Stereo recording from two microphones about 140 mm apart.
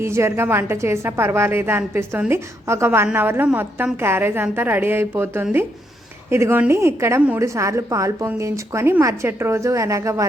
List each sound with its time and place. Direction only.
0.0 s a woman's voice: 20° right (ahead or behind)